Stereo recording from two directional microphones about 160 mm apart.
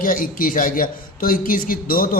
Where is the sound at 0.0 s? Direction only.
60° left (ahead or behind).